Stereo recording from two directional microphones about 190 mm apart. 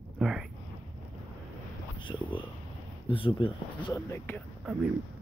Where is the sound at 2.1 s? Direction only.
15° left (ahead or behind).